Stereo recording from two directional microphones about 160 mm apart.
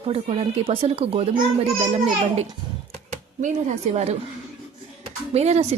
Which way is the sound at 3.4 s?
45° right (ahead or behind).